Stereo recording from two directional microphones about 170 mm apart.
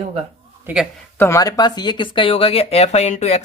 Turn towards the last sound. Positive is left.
turn(degrees=40)  # may be behind; listen again after turning